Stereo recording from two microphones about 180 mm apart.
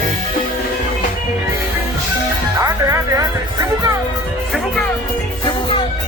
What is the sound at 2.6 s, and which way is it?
Music, 20° right (ahead or behind).